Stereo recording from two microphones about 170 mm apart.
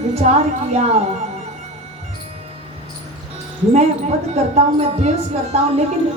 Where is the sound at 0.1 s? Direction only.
40° right (ahead or behind).